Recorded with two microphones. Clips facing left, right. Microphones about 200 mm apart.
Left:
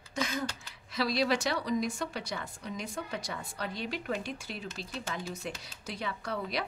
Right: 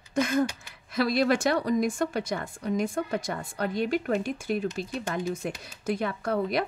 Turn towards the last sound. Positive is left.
turn(degrees=-50)  # may be behind; listen again after turning